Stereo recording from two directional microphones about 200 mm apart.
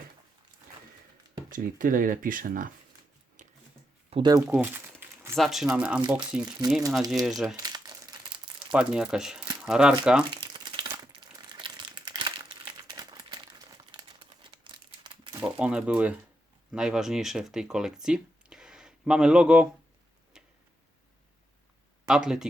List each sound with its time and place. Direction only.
1.5 s speech: 45° right (ahead or behind)
3.4 s a sound: 35° right (ahead or behind)
4.1 s speech: 20° right (ahead or behind)
4.4 s crumpling: 10° right (ahead or behind)
5.4 s speech: centre (ahead or behind)
7.6 s crumpling: 20° right (ahead or behind)
8.7 s speech: 5° right (ahead or behind)
10.2 s crumpling: 25° right (ahead or behind)
15.5 s speech: 5° right (ahead or behind)
20.3 s tick-tock: 5° right (ahead or behind)
22.0 s speech: 5° right (ahead or behind)